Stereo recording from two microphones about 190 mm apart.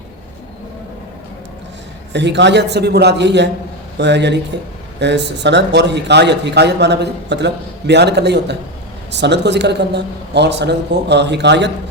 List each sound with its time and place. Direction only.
2.1 s speech: 65° right (ahead or behind)